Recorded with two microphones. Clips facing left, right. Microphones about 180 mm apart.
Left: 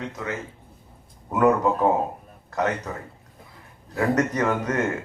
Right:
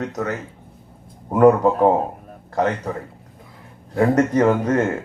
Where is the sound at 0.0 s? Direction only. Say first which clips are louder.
Right 6 dB; 45° right (ahead or behind).